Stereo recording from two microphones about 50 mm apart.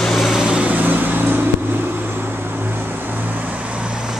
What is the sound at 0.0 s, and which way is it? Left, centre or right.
Vehicle, centre.